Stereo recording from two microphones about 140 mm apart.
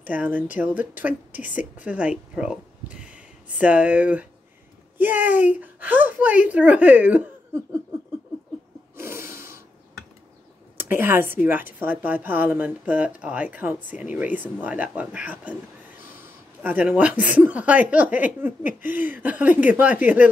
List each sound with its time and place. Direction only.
0.0 s speech: 10° right (ahead or behind)
8.9 s a sound: 15° right (ahead or behind)
10.8 s speech: 15° right (ahead or behind)
16.6 s speech: 10° right (ahead or behind)